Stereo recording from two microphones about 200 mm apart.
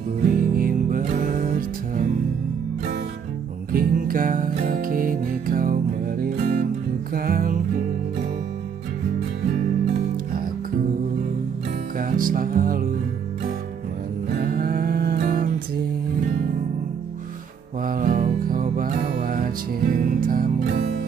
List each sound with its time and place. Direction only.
0.3 s music: 45° right (ahead or behind)
3.7 s music: 45° right (ahead or behind)
12.0 s music: 45° right (ahead or behind)
14.4 s livestock: 45° right (ahead or behind)
17.8 s music: 45° right (ahead or behind)